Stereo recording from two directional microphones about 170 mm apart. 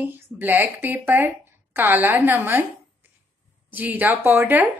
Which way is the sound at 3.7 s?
10° right (ahead or behind).